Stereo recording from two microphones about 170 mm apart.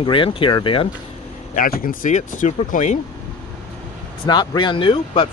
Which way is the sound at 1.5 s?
55° left (ahead or behind).